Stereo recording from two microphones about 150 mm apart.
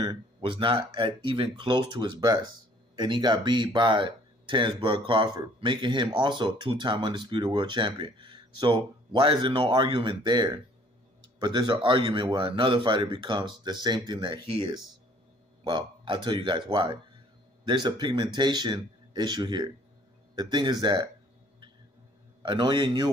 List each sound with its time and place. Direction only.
0.0 s speech: 30° right (ahead or behind)
22.4 s speech: 30° right (ahead or behind)